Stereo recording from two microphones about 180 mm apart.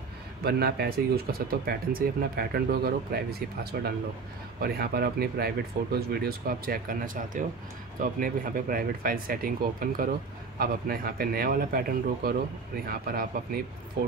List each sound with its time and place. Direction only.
0.4 s speech: 60° right (ahead or behind)